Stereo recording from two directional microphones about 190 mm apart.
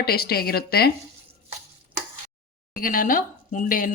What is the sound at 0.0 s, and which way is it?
Speech, 55° left (ahead or behind).